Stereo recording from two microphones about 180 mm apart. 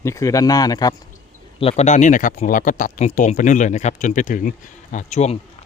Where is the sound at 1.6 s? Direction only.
40° left (ahead or behind).